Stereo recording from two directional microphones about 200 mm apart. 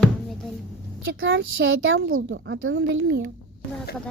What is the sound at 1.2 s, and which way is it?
Speech, 70° right (ahead or behind).